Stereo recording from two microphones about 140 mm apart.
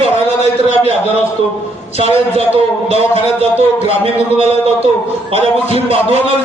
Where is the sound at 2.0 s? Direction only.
45° right (ahead or behind).